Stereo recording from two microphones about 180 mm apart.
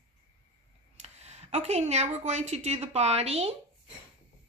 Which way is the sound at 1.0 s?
35° right (ahead or behind).